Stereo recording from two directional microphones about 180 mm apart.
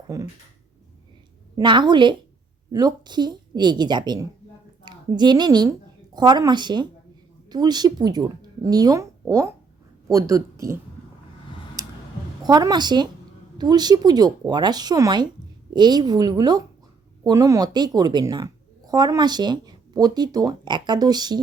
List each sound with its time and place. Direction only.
0.1 s speech: 20° right (ahead or behind)
1.5 s a woman's voice: 25° right (ahead or behind)
12.4 s a woman's voice: 20° right (ahead or behind)